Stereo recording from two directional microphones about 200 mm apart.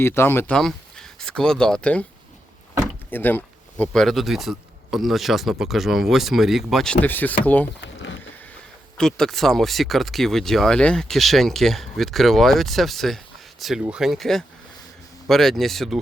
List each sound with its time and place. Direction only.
0.0 s speech: 10° left (ahead or behind)
3.1 s speech: 10° left (ahead or behind)
7.8 s a sound: 65° left (ahead or behind)
9.0 s speech: 5° left (ahead or behind)